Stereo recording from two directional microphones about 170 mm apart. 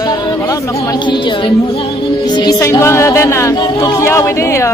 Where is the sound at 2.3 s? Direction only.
25° left (ahead or behind).